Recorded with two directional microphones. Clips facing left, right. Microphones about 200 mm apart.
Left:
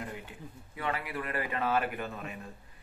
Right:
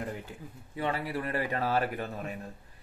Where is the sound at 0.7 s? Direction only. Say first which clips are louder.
Right 3 dB; 30° right (ahead or behind).